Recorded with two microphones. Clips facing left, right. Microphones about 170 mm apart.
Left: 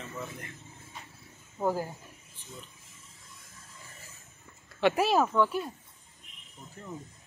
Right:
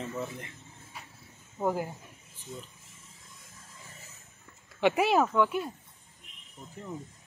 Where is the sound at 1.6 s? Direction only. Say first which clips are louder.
Even; 10° right (ahead or behind).